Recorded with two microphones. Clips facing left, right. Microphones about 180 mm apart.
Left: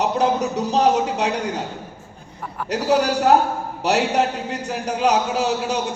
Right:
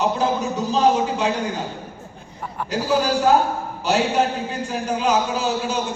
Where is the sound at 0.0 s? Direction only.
70° left (ahead or behind).